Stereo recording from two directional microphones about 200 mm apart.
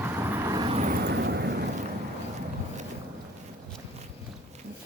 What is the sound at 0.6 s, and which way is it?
Vehicle, 30° right (ahead or behind).